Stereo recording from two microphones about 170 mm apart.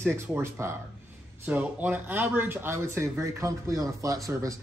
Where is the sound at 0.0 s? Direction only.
15° right (ahead or behind).